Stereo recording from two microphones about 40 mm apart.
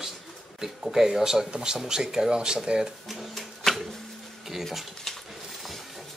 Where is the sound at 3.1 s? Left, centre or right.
Centre.